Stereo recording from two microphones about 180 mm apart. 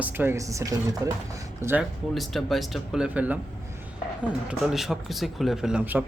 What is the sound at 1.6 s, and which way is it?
Speech, 5° right (ahead or behind).